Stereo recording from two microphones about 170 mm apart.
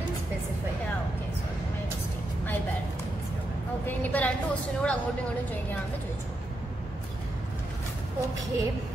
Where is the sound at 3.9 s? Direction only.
10° left (ahead or behind).